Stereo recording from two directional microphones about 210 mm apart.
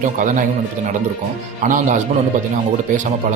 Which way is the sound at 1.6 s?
40° right (ahead or behind).